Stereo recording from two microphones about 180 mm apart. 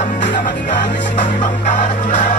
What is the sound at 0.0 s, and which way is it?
Music, 40° left (ahead or behind).